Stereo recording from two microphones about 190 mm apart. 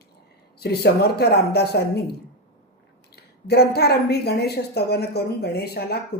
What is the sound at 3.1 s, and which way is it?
A woman's voice, 55° left (ahead or behind).